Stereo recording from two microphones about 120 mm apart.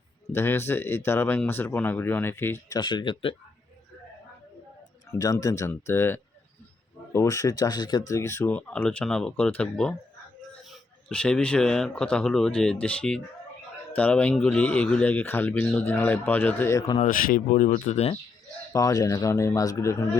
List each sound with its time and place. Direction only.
0.3 s speech: 20° left (ahead or behind)
2.7 s speech: 40° left (ahead or behind)
5.1 s speech: 30° left (ahead or behind)
17.5 s speech: 90° left; by 18.2 s 60° left (ahead or behind)
18.7 s speech: 30° left (ahead or behind)